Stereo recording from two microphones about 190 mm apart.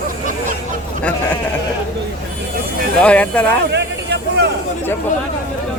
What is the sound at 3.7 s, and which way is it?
Vehicle, 65° right (ahead or behind).